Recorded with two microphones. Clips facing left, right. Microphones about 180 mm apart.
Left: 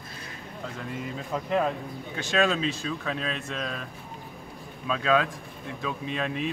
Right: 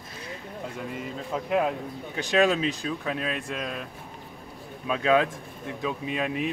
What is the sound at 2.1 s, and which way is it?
Speech, 15° right (ahead or behind).